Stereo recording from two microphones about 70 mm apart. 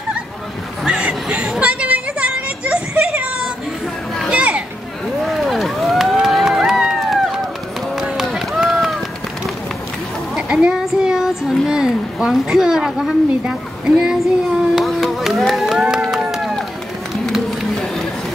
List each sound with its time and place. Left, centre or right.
0.8 s a sound: centre
4.3 s children playing: centre
5.2 s run: centre
10.3 s child singing: centre
14.9 s music: centre
16.0 s run: centre